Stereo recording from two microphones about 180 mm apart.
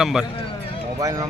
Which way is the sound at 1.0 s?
20° right (ahead or behind).